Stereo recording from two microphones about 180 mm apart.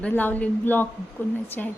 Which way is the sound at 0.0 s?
10° left (ahead or behind).